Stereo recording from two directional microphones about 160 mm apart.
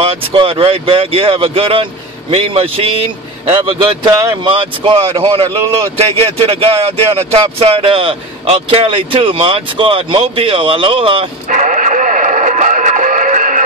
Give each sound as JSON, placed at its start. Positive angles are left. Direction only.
{"t": 0.0, "sound": "speech", "side_deg": -35}
{"t": 4.0, "sound": "speech", "side_deg": -20}
{"t": 4.6, "sound": "speech", "side_deg": -30}
{"t": 11.5, "sound": "music", "side_deg": -50}